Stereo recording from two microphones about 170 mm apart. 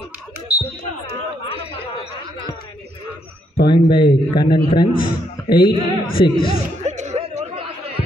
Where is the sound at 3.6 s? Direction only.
30° left (ahead or behind).